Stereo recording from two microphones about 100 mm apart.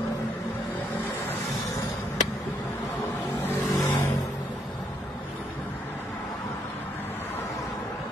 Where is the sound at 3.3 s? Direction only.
20° left (ahead or behind).